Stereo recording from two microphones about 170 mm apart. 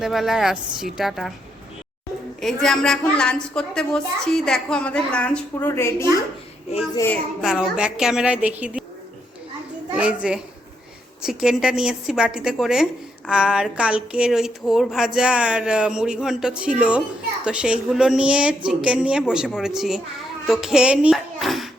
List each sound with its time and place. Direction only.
0.0 s a woman's voice: centre (ahead or behind)
2.4 s a woman's voice: centre (ahead or behind)
7.4 s a woman's voice: centre (ahead or behind)
9.9 s a child's voice: 5° right (ahead or behind)